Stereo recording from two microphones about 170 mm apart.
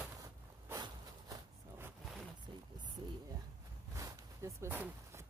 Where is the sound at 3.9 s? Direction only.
20° right (ahead or behind).